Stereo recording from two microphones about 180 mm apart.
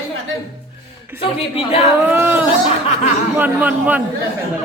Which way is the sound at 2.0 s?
10° right (ahead or behind).